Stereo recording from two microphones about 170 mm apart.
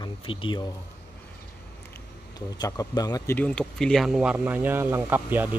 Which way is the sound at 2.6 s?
25° left (ahead or behind).